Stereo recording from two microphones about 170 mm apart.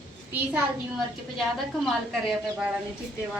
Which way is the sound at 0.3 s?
10° right (ahead or behind).